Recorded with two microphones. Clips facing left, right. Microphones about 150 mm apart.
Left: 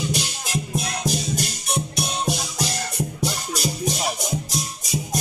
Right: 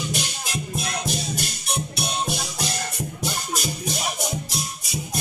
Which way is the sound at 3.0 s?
35° left (ahead or behind).